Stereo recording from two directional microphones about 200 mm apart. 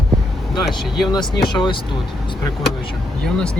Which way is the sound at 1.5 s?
25° left (ahead or behind).